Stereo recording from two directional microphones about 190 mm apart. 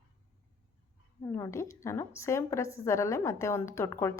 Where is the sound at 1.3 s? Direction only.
15° left (ahead or behind).